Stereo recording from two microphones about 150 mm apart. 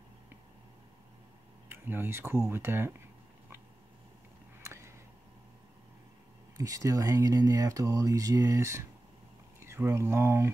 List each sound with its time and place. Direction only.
1.7 s speech: 15° right (ahead or behind)
4.6 s a sound: 20° right (ahead or behind)
6.5 s speech: 20° right (ahead or behind)